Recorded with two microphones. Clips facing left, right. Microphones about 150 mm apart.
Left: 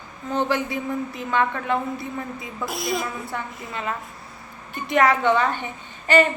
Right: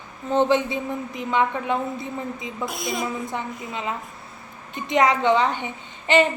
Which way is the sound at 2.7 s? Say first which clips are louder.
Left 4 dB; centre (ahead or behind).